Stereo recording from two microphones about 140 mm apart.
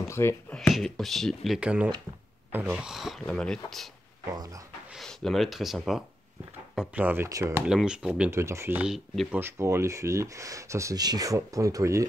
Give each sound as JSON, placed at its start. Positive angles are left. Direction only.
{"t": 0.1, "sound": "speech", "side_deg": 20}
{"t": 0.6, "sound": "speech", "side_deg": 0}
{"t": 4.9, "sound": "speech", "side_deg": 0}
{"t": 7.0, "sound": "speech", "side_deg": -10}
{"t": 7.6, "sound": "speech", "side_deg": -5}
{"t": 8.3, "sound": "speech", "side_deg": -20}
{"t": 8.8, "sound": "speech", "side_deg": 0}
{"t": 9.3, "sound": "speech", "side_deg": -15}